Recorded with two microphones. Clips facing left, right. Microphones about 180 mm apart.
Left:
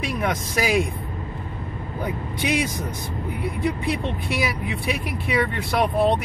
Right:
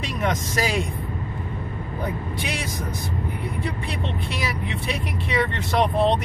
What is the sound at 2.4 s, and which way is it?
Speech, 15° left (ahead or behind).